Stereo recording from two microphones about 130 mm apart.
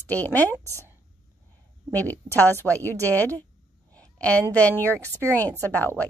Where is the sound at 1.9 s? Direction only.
15° left (ahead or behind).